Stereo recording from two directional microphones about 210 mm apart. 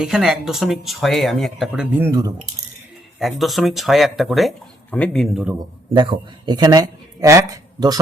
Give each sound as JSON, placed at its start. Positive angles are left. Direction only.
{"t": 0.0, "sound": "speech", "side_deg": 0}
{"t": 3.2, "sound": "speech", "side_deg": 0}
{"t": 6.0, "sound": "speech", "side_deg": -20}